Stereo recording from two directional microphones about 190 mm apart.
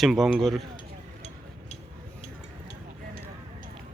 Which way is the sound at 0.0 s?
Centre (ahead or behind).